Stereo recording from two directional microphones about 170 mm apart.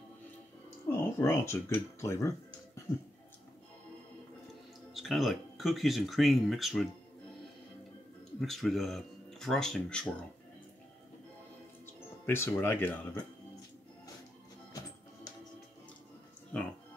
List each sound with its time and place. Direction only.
0.8 s speech: 15° left (ahead or behind)
4.9 s speech: centre (ahead or behind)
8.4 s speech: centre (ahead or behind)
11.8 s speech: 15° left (ahead or behind)
16.5 s music: 5° left (ahead or behind)